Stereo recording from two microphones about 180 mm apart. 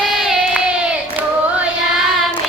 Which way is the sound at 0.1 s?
Centre (ahead or behind).